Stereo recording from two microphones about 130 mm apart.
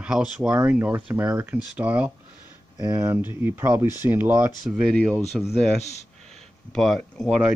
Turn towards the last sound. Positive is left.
turn(degrees=5)  # may be behind; listen again after turning